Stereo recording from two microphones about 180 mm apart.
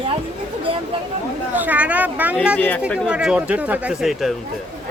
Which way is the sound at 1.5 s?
10° right (ahead or behind).